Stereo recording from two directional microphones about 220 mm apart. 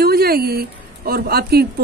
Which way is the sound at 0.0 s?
45° right (ahead or behind).